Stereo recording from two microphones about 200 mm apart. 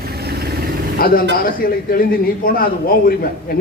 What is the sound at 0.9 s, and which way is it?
A man's voice, 45° left (ahead or behind).